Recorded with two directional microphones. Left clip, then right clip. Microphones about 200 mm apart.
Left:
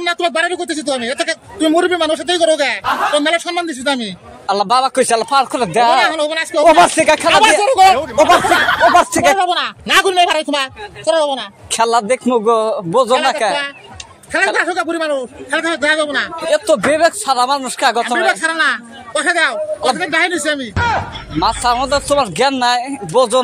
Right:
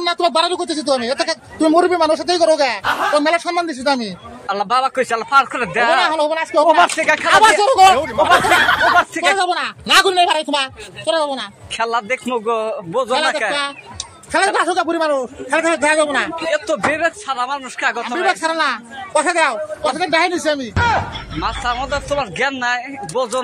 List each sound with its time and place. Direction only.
0.0 s speech: 20° left (ahead or behind)
4.5 s speech: 40° left (ahead or behind)
5.9 s speech: 25° left (ahead or behind)
6.8 s speech: 55° left (ahead or behind)
7.6 s speech: 10° left (ahead or behind)
8.9 s speech: 55° left (ahead or behind)
9.2 s speech: centre (ahead or behind)
9.5 s speech: 15° left (ahead or behind)
11.7 s speech: 50° left (ahead or behind)
14.3 s speech: 10° left (ahead or behind)
16.4 s speech: 45° left (ahead or behind)
18.0 s speech: 20° left (ahead or behind)
20.7 s speech: centre (ahead or behind)
21.4 s speech: 50° left (ahead or behind)